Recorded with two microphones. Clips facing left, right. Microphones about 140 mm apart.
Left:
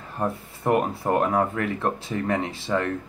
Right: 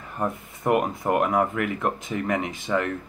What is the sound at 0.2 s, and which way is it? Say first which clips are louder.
Speech: even; 30° left (ahead or behind).